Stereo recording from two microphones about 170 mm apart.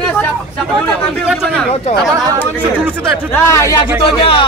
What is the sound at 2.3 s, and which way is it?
Speech, 10° right (ahead or behind).